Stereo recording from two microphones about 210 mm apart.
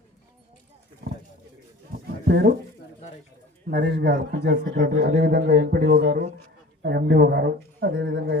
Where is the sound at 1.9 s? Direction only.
45° right (ahead or behind).